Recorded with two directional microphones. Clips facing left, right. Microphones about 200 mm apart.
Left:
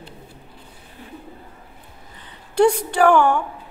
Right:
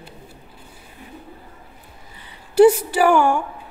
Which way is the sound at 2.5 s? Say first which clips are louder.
Right 4 dB; 5° right (ahead or behind).